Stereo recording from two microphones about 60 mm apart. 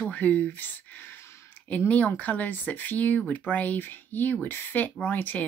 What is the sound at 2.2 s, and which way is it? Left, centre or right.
Speech, left.